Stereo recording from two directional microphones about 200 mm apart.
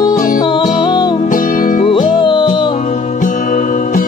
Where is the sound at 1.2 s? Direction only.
40° left (ahead or behind).